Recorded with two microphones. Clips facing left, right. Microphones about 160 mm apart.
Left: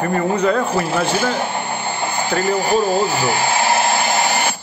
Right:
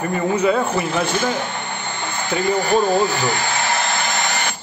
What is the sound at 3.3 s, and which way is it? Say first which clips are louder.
Hair dryer: left 4 dB; 30° left (ahead or behind).